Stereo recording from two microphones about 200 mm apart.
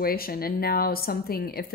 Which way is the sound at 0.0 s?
50° left (ahead or behind).